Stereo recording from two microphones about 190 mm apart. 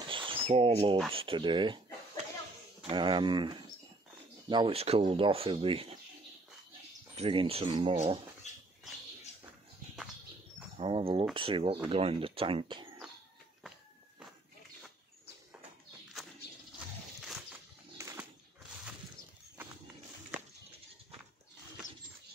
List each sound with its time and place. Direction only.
0.0 s a sound: 25° right (ahead or behind)
1.1 s speech: 25° right (ahead or behind)
2.9 s speech: 25° right (ahead or behind)
7.2 s speech: 30° right (ahead or behind)
10.8 s speech: 30° right (ahead or behind)
17.2 s a sound: centre (ahead or behind)
17.9 s pigeon: 15° right (ahead or behind)